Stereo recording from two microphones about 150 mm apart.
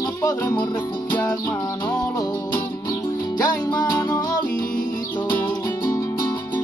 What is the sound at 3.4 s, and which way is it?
Music, 25° left (ahead or behind).